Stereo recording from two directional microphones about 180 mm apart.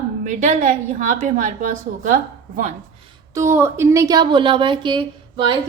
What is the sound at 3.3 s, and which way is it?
A woman's voice, 15° right (ahead or behind).